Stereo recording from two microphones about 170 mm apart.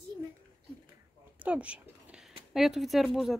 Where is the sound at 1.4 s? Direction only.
10° right (ahead or behind).